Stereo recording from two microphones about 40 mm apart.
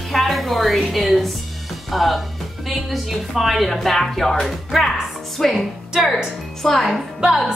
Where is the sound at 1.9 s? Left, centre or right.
Centre.